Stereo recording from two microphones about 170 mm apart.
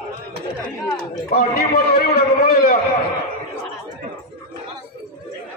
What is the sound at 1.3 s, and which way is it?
A man's voice, 65° left (ahead or behind).